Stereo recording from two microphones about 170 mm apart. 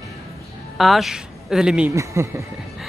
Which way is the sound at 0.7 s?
Centre (ahead or behind).